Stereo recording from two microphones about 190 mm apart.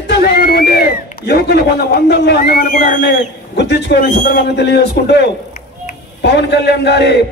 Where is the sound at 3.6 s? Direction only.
60° left (ahead or behind).